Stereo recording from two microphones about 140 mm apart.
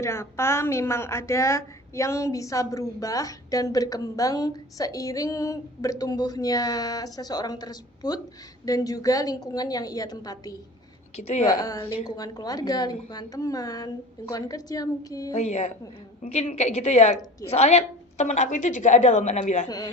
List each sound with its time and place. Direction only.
0.0 s a woman's voice: 20° left (ahead or behind)
11.2 s a woman's voice: 55° left (ahead or behind)
11.4 s a woman's voice: 25° left (ahead or behind)
15.4 s a woman's voice: 50° left (ahead or behind)